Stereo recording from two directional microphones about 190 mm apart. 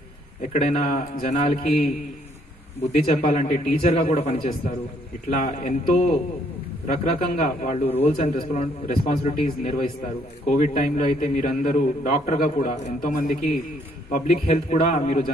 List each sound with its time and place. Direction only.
0.4 s a man's voice: 40° left (ahead or behind)
7.8 s a man's voice: 30° left (ahead or behind)